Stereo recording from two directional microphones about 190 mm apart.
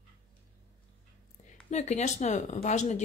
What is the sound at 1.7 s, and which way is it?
Speech, 35° left (ahead or behind).